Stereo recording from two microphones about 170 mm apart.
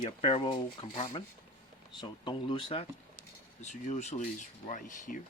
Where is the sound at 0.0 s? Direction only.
35° left (ahead or behind).